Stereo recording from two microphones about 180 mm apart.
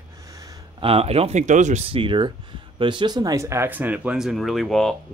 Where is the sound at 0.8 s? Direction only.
30° right (ahead or behind).